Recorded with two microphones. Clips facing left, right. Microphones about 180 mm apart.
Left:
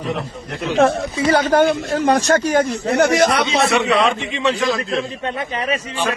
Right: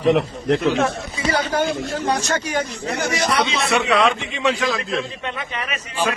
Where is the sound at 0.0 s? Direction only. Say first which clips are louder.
Right 7 dB; 90° right; by 0.8 s 70° right (ahead or behind).